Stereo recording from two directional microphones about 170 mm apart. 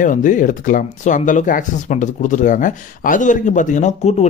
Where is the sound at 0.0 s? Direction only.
50° left (ahead or behind).